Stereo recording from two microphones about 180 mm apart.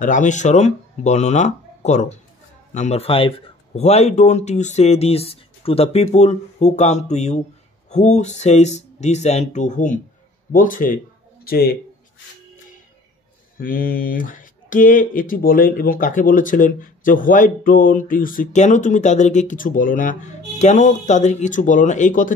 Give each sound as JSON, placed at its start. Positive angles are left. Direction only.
{"t": 0.0, "sound": "speech", "side_deg": 45}
{"t": 13.6, "sound": "speech", "side_deg": 50}